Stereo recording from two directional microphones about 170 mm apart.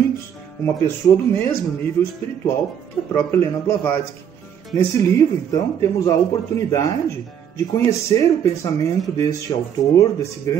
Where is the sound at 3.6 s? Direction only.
10° left (ahead or behind).